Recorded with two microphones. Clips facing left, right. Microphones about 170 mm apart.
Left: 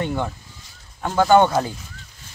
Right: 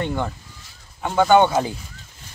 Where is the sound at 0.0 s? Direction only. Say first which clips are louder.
Even; 5° left (ahead or behind).